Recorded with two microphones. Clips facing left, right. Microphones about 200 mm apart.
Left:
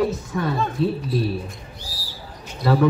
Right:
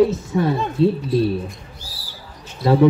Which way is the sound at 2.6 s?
25° right (ahead or behind).